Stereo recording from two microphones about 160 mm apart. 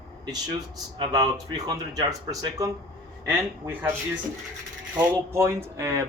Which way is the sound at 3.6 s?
10° right (ahead or behind).